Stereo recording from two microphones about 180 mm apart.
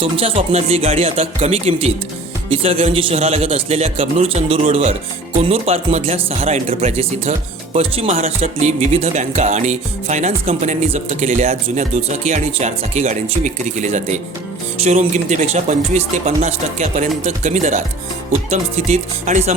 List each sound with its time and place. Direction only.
0.0 s music: 30° right (ahead or behind)